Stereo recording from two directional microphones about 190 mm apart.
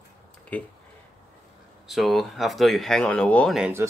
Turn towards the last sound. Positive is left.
turn(degrees=0)  # may be behind; listen again after turning